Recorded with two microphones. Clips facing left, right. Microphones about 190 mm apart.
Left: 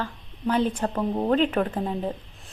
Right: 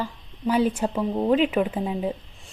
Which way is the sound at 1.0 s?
5° left (ahead or behind).